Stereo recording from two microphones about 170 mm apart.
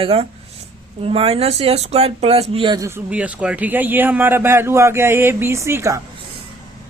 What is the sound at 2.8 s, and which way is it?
A man's voice, 10° right (ahead or behind).